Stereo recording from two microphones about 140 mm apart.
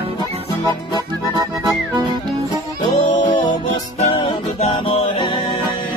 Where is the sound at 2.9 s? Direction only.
35° left (ahead or behind).